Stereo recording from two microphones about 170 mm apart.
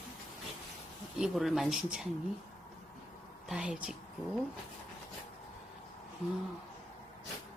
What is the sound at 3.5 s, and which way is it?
Speech, 5° right (ahead or behind).